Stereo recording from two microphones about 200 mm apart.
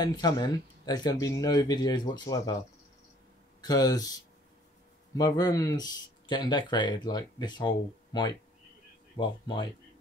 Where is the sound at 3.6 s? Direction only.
20° left (ahead or behind).